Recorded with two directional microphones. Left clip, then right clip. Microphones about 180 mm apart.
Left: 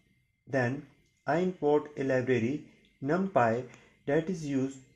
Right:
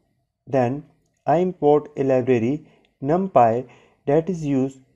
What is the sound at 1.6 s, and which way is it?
Speech, 15° right (ahead or behind).